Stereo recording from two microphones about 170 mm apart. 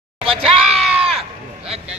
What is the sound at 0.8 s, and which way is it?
Sheep, 5° right (ahead or behind).